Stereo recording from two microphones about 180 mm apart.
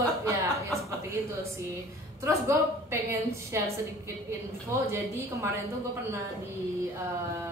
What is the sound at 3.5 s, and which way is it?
Speech, 15° right (ahead or behind).